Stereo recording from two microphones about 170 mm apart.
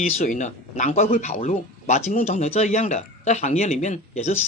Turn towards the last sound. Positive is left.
turn(degrees=40)  # may be behind; listen again after turning